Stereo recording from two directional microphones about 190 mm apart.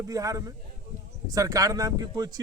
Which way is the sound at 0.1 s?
20° right (ahead or behind).